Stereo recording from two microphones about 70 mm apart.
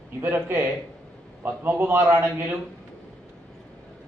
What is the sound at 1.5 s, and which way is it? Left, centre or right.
A man's voice, right.